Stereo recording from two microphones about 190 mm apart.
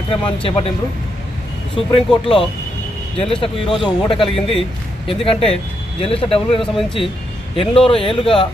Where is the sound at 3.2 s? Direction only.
30° left (ahead or behind).